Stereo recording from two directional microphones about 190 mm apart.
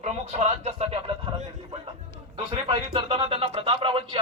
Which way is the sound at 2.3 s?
25° right (ahead or behind).